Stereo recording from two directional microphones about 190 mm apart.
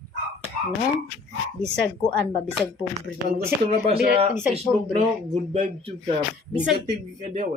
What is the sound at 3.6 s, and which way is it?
Speech, 35° right (ahead or behind).